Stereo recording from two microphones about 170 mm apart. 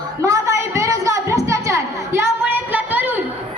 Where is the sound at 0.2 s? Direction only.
20° right (ahead or behind).